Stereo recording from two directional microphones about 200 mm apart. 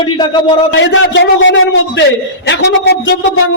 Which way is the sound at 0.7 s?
65° left (ahead or behind).